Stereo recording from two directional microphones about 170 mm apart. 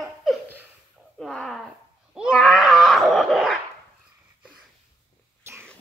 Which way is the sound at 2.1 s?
5° right (ahead or behind).